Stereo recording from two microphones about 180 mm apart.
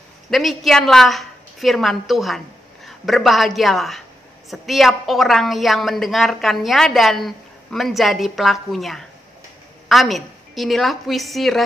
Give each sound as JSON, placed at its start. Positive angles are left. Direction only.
{"t": 0.3, "sound": "a woman's voice", "side_deg": 0}